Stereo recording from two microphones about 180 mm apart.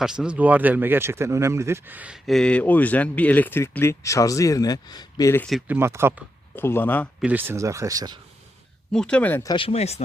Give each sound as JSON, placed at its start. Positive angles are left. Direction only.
{"t": 0.0, "sound": "speech", "side_deg": -5}
{"t": 5.5, "sound": "speech", "side_deg": 0}
{"t": 5.7, "sound": "speech", "side_deg": -15}
{"t": 6.6, "sound": "speech", "side_deg": 10}
{"t": 7.2, "sound": "speech", "side_deg": -10}
{"t": 8.9, "sound": "speech", "side_deg": 5}
{"t": 9.5, "sound": "speech", "side_deg": 30}